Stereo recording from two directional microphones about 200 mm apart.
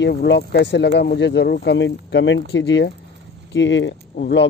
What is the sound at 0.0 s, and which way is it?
Speech, 55° left (ahead or behind).